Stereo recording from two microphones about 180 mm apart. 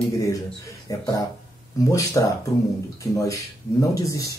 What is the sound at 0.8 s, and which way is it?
Speech, 20° left (ahead or behind).